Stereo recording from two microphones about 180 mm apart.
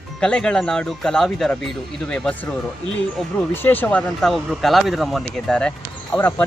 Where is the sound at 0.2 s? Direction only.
5° left (ahead or behind).